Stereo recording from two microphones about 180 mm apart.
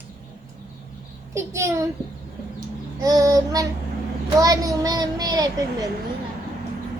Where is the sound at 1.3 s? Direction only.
15° right (ahead or behind).